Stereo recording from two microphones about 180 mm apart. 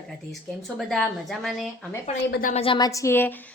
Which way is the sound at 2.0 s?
40° left (ahead or behind).